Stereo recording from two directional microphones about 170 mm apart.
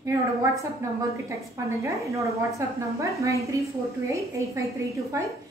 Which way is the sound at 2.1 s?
20° right (ahead or behind).